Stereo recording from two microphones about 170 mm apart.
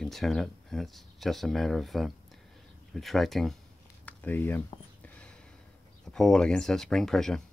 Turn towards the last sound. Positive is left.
turn(degrees=5)  # may be behind; listen again after turning